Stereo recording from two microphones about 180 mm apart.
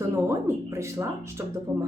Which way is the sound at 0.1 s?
15° right (ahead or behind).